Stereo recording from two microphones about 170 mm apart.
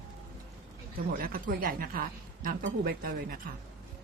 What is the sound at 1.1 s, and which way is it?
Speech, 55° right (ahead or behind).